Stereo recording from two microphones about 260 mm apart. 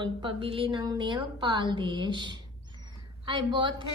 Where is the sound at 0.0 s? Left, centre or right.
Centre.